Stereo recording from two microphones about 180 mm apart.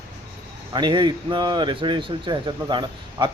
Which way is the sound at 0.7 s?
25° right (ahead or behind).